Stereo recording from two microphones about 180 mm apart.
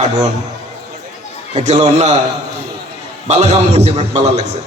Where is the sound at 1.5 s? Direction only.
40° right (ahead or behind).